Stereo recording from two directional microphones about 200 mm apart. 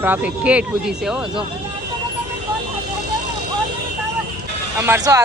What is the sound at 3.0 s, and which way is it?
Vehicle, 55° right (ahead or behind).